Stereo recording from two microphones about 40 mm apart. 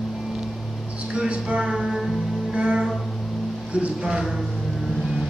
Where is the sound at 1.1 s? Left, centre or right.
Right.